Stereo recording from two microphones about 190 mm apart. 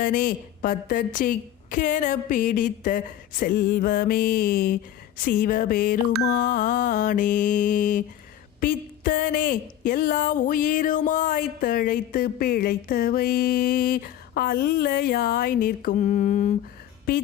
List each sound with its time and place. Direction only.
0.0 s a woman's voice: 45° left (ahead or behind)